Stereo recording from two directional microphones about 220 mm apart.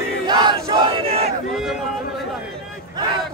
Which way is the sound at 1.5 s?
Centre (ahead or behind).